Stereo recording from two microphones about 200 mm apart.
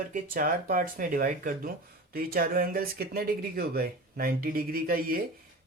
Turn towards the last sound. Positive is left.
turn(degrees=-45)  # may be behind; listen again after turning